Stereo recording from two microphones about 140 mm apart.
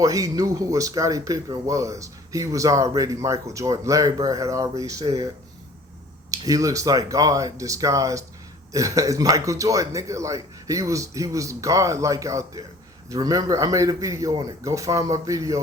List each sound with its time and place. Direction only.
0.0 s speech: 25° right (ahead or behind)
6.3 s speech: 25° right (ahead or behind)